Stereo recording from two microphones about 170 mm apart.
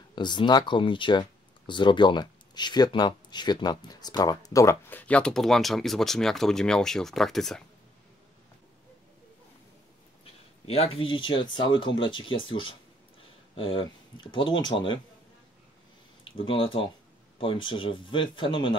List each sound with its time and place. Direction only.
0.1 s speech: 25° left (ahead or behind); by 7.6 s centre (ahead or behind)
10.7 s speech: 35° left (ahead or behind)
16.4 s speech: 30° left (ahead or behind)